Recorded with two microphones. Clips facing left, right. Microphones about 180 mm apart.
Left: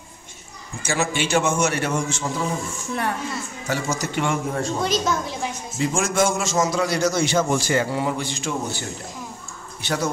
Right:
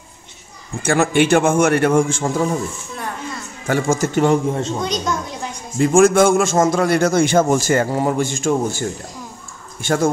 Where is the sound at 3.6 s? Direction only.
50° right (ahead or behind).